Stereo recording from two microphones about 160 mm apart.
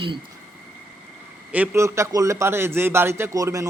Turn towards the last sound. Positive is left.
turn(degrees=-20)  # may be behind; listen again after turning